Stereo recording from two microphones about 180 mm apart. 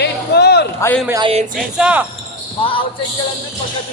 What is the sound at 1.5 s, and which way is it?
Speech, 5° right (ahead or behind).